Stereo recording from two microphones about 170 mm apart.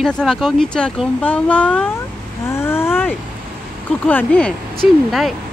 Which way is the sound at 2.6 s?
15° left (ahead or behind).